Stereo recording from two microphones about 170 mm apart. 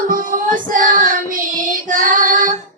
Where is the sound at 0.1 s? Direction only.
50° right (ahead or behind).